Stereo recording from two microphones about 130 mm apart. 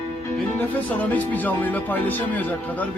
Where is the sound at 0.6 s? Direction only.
10° left (ahead or behind).